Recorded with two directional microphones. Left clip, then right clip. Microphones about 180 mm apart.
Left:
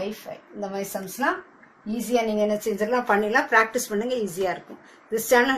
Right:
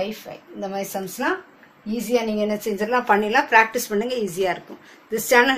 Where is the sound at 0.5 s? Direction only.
25° right (ahead or behind); by 5.5 s 10° right (ahead or behind).